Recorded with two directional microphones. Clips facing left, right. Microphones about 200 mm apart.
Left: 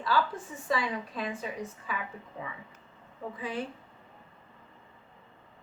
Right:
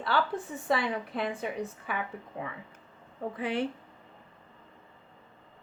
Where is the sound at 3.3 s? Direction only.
70° right (ahead or behind).